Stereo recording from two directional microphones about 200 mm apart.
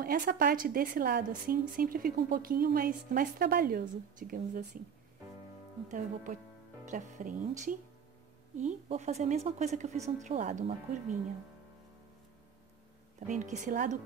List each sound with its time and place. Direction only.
0.0 s a woman's voice: 45° right (ahead or behind)
5.9 s a woman's voice: 40° right (ahead or behind)
13.3 s a woman's voice: 40° right (ahead or behind)